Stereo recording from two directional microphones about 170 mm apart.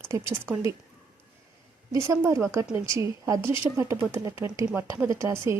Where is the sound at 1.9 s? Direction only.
15° right (ahead or behind).